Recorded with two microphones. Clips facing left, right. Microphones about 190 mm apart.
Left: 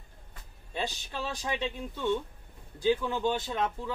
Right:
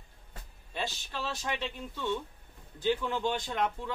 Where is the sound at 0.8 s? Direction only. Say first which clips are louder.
Even; 15° left (ahead or behind).